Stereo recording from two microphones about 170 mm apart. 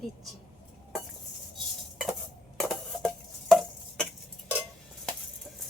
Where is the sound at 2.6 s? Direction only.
5° left (ahead or behind).